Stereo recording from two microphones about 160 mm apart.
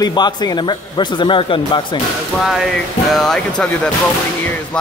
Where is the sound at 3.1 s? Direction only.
5° left (ahead or behind).